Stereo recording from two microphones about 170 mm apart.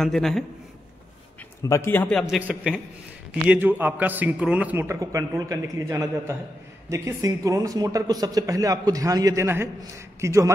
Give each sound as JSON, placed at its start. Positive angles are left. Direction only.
{"t": 0.0, "sound": "a man's voice", "side_deg": 0}
{"t": 1.7, "sound": "a man's voice", "side_deg": 15}